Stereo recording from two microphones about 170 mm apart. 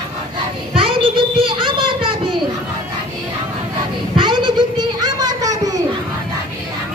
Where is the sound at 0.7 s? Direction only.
30° right (ahead or behind).